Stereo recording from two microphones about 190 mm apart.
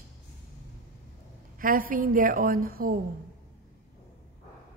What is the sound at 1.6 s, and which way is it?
A woman's voice, 45° right (ahead or behind).